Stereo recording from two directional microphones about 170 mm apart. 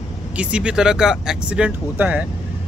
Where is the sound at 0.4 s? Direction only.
5° right (ahead or behind).